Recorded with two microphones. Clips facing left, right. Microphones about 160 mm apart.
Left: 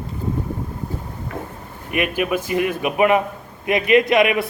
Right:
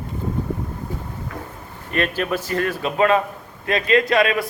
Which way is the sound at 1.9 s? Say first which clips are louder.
Left 1 dB; 15° left (ahead or behind).